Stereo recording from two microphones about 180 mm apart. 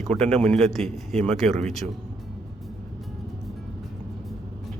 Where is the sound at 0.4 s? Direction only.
5° left (ahead or behind).